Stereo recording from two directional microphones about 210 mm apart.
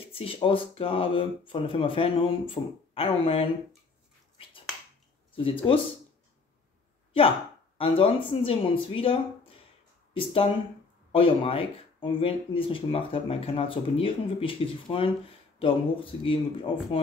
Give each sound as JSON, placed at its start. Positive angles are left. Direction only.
{"t": 0.0, "sound": "speech", "side_deg": 25}
{"t": 5.3, "sound": "speech", "side_deg": 25}
{"t": 7.7, "sound": "speech", "side_deg": 25}